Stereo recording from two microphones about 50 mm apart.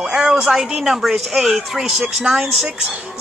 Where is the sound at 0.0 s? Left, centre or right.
Centre.